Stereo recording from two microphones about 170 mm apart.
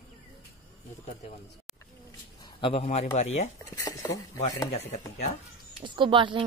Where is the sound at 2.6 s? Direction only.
35° left (ahead or behind).